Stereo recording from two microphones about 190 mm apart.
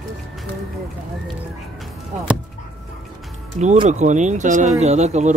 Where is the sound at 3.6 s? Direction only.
40° right (ahead or behind).